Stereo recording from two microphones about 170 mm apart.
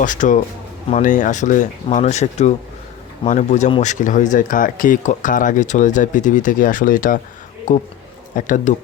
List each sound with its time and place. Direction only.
0.0 s speech: 50° left (ahead or behind)